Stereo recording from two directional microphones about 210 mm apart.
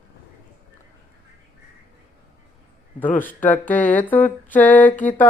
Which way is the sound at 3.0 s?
10° left (ahead or behind).